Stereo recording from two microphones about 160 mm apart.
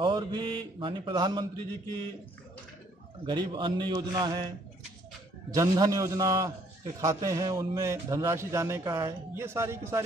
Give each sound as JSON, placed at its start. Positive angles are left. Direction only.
{"t": 0.0, "sound": "speech", "side_deg": -30}
{"t": 3.3, "sound": "speech", "side_deg": -30}
{"t": 5.5, "sound": "a man's voice", "side_deg": -25}